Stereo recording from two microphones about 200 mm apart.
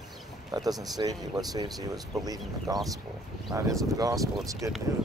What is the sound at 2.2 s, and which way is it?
Speech, 20° right (ahead or behind).